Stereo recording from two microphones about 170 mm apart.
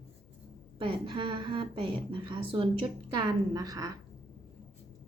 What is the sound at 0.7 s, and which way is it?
A woman's voice, 30° right (ahead or behind).